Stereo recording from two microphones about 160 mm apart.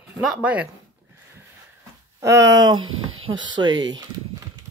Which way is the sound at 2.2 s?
20° right (ahead or behind).